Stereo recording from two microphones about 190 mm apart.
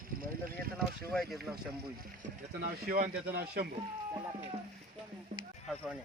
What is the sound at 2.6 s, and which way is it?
Speech, 55° right (ahead or behind).